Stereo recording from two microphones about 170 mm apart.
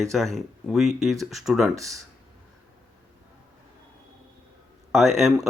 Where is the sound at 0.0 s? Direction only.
Centre (ahead or behind).